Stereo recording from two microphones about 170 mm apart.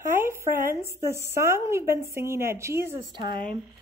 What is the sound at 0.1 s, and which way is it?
A woman's voice, 15° right (ahead or behind).